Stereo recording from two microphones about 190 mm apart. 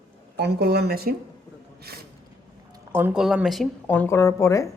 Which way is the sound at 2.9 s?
10° right (ahead or behind).